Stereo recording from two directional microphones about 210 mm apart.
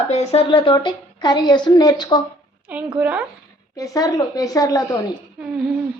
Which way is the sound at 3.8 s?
15° left (ahead or behind).